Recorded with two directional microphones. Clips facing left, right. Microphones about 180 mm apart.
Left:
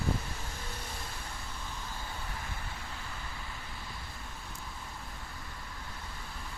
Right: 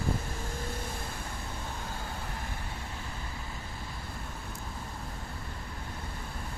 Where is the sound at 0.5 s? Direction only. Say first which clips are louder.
Right 6 dB; 50° right (ahead or behind).